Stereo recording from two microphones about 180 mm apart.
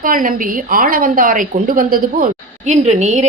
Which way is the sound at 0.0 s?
50° right (ahead or behind).